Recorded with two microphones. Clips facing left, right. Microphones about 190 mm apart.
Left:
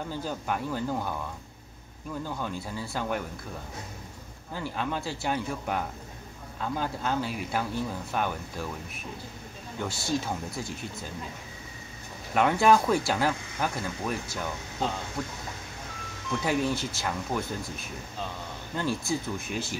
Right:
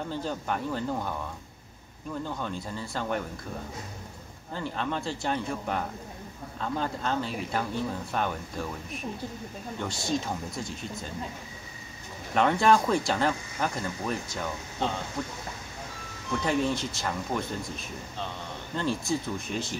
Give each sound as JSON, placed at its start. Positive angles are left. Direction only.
{"t": 0.2, "sound": "speech", "side_deg": 5}
{"t": 2.2, "sound": "speech", "side_deg": 5}
{"t": 4.6, "sound": "speech", "side_deg": 5}
{"t": 9.8, "sound": "speech", "side_deg": 5}
{"t": 12.4, "sound": "speech", "side_deg": 5}
{"t": 16.4, "sound": "speech", "side_deg": 5}
{"t": 18.8, "sound": "speech", "side_deg": 5}